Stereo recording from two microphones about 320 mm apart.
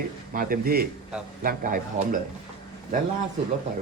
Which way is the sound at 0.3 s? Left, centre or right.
Right.